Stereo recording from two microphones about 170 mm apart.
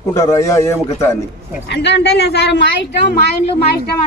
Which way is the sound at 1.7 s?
85° left.